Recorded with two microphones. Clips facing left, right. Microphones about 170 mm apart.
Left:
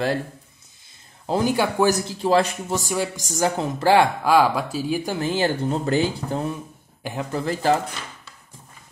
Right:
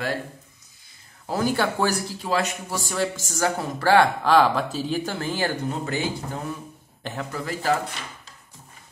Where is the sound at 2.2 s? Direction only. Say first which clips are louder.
Left 8 dB; 30° left (ahead or behind).